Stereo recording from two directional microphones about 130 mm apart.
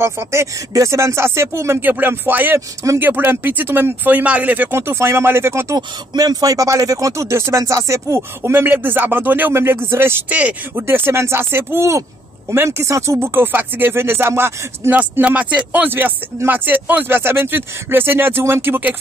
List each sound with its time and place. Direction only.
0.0 s speech: 20° right (ahead or behind)